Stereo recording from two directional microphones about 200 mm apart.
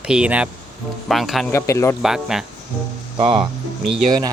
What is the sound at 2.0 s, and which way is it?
Speech, centre (ahead or behind).